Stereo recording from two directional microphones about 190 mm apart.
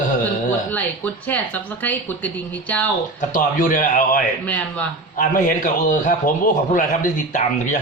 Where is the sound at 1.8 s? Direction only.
10° left (ahead or behind).